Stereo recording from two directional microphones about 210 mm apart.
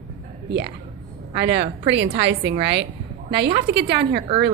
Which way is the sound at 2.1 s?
55° right (ahead or behind).